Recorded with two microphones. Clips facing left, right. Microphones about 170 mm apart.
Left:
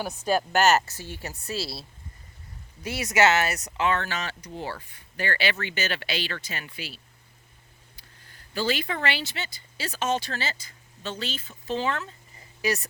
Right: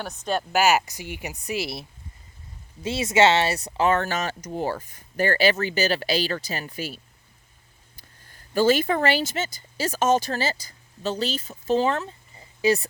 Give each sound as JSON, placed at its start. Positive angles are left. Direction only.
{"t": 0.0, "sound": "speech", "side_deg": 5}
{"t": 0.5, "sound": "speech", "side_deg": -10}
{"t": 8.5, "sound": "speech", "side_deg": -45}